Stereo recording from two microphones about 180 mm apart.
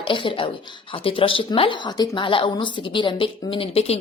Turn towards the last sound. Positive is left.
turn(degrees=35)  # may be behind; listen again after turning